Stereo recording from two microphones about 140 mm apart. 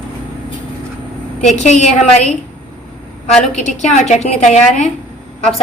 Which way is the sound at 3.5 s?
55° left (ahead or behind).